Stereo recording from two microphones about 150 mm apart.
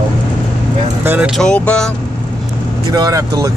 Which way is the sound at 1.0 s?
10° right (ahead or behind).